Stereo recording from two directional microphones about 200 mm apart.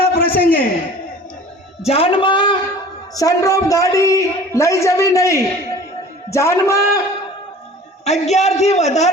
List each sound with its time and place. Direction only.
0.0 s a sound: 50° left (ahead or behind)
1.8 s a man's voice: 30° left (ahead or behind); by 7.0 s 15° left (ahead or behind)
8.0 s a man's voice: 35° left (ahead or behind)